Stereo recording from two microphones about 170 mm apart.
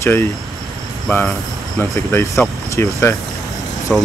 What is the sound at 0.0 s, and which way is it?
Speech, 15° left (ahead or behind).